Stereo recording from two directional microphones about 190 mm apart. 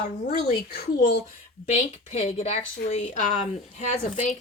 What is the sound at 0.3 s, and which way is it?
Speech, 55° left (ahead or behind).